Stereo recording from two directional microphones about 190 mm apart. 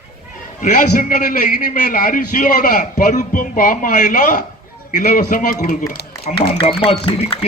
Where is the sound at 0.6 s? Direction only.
45° left (ahead or behind).